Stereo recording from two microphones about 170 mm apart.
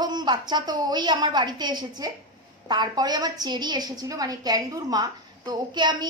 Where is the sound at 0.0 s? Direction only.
25° right (ahead or behind).